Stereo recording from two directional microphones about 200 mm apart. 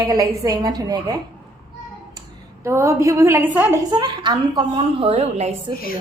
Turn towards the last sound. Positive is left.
turn(degrees=-35)  # may be behind; listen again after turning